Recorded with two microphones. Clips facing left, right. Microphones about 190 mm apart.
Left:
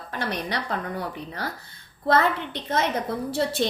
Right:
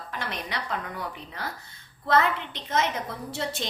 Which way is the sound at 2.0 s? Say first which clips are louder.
Left 2 dB; 50° left (ahead or behind).